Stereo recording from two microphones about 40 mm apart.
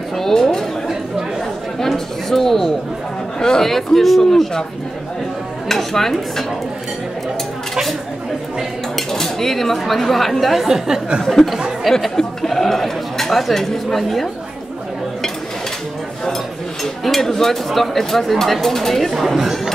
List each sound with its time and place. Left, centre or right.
0.2 s speech: centre
2.2 s speech: centre
3.7 s speech: centre
5.7 s speech: centre
8.9 s speech: centre
11.9 s speech: centre
17.0 s speech: centre